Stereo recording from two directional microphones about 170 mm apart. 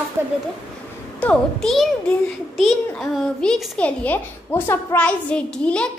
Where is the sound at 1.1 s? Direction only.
5° left (ahead or behind).